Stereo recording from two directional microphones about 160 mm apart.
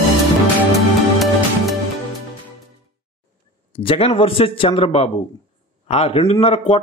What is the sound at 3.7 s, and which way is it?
Speech, 35° left (ahead or behind).